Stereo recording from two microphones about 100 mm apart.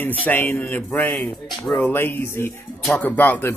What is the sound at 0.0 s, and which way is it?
Speech, 15° left (ahead or behind).